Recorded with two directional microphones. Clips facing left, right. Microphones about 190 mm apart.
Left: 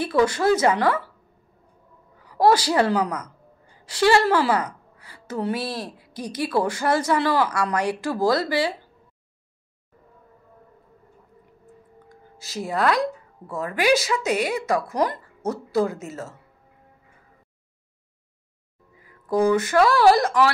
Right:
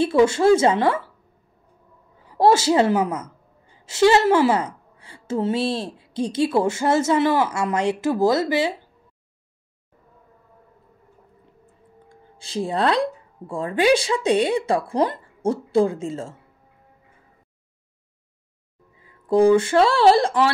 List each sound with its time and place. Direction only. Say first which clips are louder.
0.0 s speech: right 4 dB; 25° right (ahead or behind)
2.1 s a woman's voice: right 1 dB; 25° right (ahead or behind)
12.4 s speech: right 2 dB; 30° right (ahead or behind)
18.9 s speech: right 4 dB; 25° right (ahead or behind)